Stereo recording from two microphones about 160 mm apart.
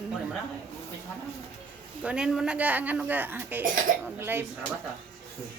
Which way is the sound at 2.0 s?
5° right (ahead or behind).